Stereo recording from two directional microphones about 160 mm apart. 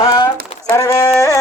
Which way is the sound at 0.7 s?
20° left (ahead or behind).